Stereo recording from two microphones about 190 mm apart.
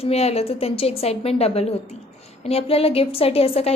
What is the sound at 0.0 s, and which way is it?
A woman's voice, 35° left (ahead or behind).